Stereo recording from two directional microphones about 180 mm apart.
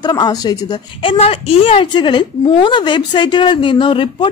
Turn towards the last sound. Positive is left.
turn(degrees=30)  # may be behind; listen again after turning